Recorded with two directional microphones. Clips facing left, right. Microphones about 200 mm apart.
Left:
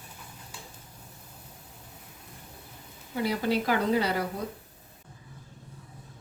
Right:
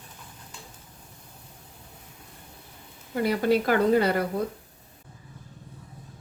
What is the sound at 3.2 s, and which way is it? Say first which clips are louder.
Speech: right 4 dB; 55° right (ahead or behind).